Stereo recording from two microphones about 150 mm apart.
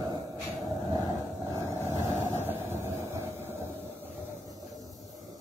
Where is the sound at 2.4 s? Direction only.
15° right (ahead or behind).